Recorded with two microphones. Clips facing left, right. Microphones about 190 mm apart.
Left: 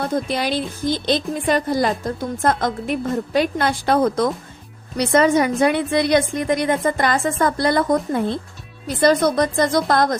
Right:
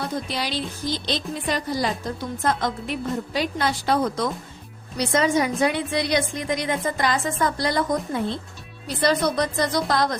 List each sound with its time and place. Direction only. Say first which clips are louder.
0.0 s a woman's voice: left 6 dB; 50° left (ahead or behind)